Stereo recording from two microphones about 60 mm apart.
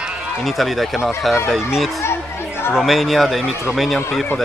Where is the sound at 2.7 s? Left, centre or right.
Centre.